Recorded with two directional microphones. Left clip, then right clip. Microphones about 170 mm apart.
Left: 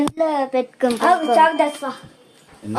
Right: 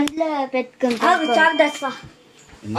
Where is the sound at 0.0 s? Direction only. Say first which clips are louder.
Left 2 dB; centre (ahead or behind).